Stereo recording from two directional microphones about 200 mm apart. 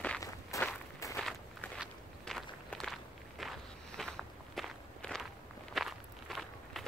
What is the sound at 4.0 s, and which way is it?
Walk, centre (ahead or behind).